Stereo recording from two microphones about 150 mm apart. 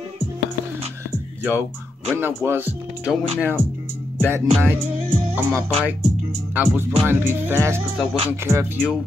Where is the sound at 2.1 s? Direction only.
15° right (ahead or behind).